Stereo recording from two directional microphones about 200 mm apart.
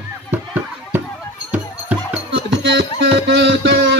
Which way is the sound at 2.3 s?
60° right (ahead or behind).